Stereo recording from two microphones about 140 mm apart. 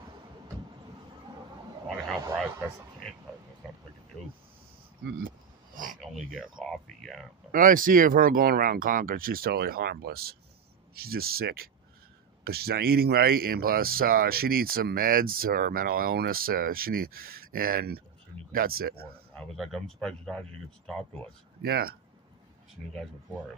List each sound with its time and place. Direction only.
3.6 s vehicle: centre (ahead or behind)
6.6 s speech: 5° left (ahead or behind)
7.5 s speech: 75° right (ahead or behind)
19.3 s speech: 5° left (ahead or behind)
21.6 s speech: 90° right
22.8 s speech: 5° right (ahead or behind)